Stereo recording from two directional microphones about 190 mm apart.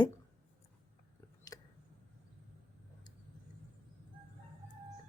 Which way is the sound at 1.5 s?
20° left (ahead or behind).